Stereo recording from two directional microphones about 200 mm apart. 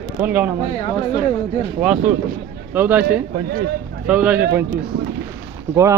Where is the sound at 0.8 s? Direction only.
30° left (ahead or behind).